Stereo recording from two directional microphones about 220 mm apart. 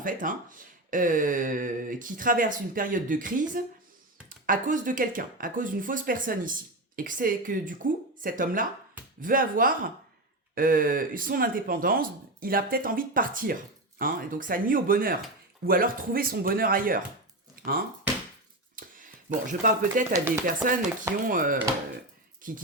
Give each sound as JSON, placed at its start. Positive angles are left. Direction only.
{"t": 0.0, "sound": "speech", "side_deg": -40}
{"t": 17.5, "sound": "a sound", "side_deg": -40}
{"t": 19.5, "sound": "speech", "side_deg": -35}
{"t": 20.1, "sound": "speech", "side_deg": -15}
{"t": 21.2, "sound": "speech", "side_deg": -40}